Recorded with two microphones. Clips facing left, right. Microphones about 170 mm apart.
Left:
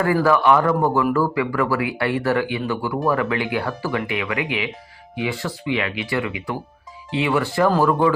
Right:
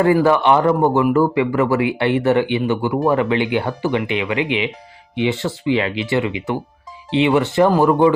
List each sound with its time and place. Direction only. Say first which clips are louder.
0.0 s speech: right 3 dB; 20° right (ahead or behind)